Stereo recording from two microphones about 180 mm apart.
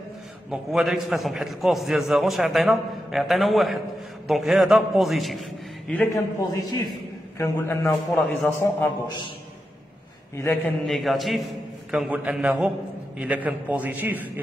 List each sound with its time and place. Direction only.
0.5 s a man's voice: centre (ahead or behind)
6.1 s a man's voice: 20° left (ahead or behind)
7.9 s a man's voice: centre (ahead or behind)
8.3 s a man's voice: 10° left (ahead or behind)
9.0 s a man's voice: 25° left (ahead or behind)
10.3 s a man's voice: 10° left (ahead or behind); by 14.1 s 10° right (ahead or behind)